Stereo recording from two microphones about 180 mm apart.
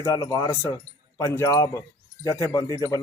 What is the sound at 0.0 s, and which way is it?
Speech, 15° left (ahead or behind).